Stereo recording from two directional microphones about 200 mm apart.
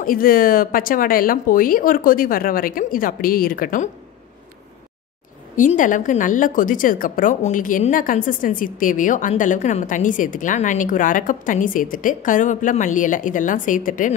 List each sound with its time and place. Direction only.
0.0 s speech: 45° left (ahead or behind)
5.6 s a woman's voice: 40° left (ahead or behind)